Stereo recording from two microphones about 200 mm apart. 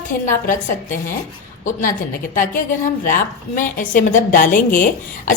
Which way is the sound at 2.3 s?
40° left (ahead or behind).